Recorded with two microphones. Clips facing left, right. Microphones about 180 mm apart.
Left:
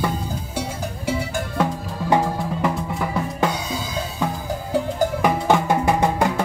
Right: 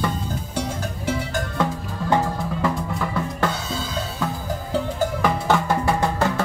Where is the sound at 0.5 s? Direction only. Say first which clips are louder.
Right 1 dB; 10° left (ahead or behind).